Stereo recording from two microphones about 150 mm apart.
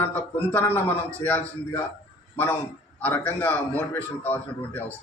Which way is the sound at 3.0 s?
10° left (ahead or behind).